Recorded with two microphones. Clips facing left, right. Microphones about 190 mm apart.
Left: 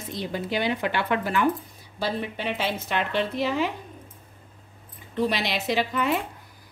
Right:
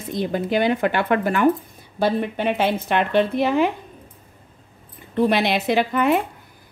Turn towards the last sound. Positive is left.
turn(degrees=-55)  # may be behind; listen again after turning